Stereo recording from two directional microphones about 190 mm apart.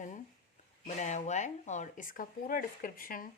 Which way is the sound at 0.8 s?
40° left (ahead or behind).